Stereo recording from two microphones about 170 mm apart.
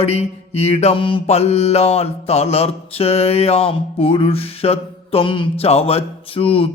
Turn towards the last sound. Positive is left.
turn(degrees=35)  # may be behind; listen again after turning